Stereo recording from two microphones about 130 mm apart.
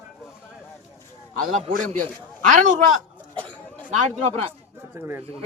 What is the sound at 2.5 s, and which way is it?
Speech, 85° right.